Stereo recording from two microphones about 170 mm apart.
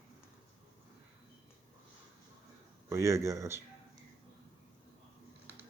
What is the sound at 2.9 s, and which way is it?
Speech, 15° right (ahead or behind).